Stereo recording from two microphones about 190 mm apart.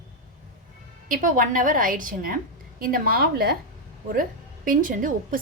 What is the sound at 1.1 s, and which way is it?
A woman's voice, 45° right (ahead or behind).